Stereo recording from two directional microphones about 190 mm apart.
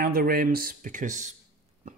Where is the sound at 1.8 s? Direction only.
40° right (ahead or behind).